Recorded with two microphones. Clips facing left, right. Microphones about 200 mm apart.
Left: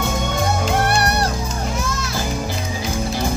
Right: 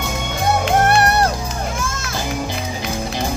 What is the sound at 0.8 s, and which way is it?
Music, 50° right (ahead or behind).